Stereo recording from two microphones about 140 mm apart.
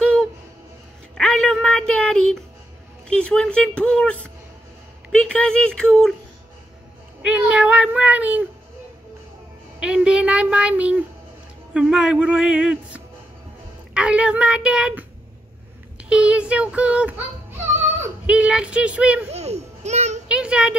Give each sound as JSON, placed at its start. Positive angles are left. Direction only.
{"t": 0.0, "sound": "music", "side_deg": 10}
{"t": 1.1, "sound": "a sound", "side_deg": 5}
{"t": 3.1, "sound": "speech", "side_deg": 10}
{"t": 7.2, "sound": "speech", "side_deg": -10}
{"t": 9.8, "sound": "speech", "side_deg": -5}
{"t": 16.0, "sound": "child singing", "side_deg": -10}
{"t": 18.2, "sound": "speech", "side_deg": -10}
{"t": 19.3, "sound": "babbling", "side_deg": -50}
{"t": 20.2, "sound": "speech", "side_deg": -5}